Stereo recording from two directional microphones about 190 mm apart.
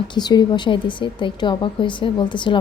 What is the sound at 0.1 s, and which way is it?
A woman's voice, 20° left (ahead or behind).